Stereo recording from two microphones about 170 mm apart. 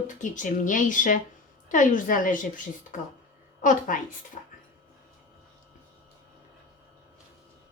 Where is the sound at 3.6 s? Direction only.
50° left (ahead or behind).